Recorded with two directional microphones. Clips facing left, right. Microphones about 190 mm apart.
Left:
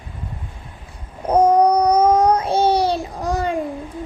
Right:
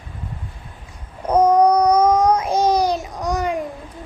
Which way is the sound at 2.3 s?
30° left (ahead or behind).